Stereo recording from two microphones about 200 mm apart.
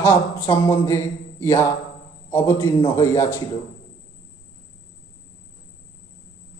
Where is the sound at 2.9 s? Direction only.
15° left (ahead or behind).